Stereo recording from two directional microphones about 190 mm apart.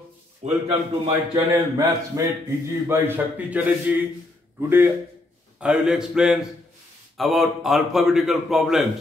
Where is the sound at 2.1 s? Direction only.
15° right (ahead or behind); by 8.8 s centre (ahead or behind).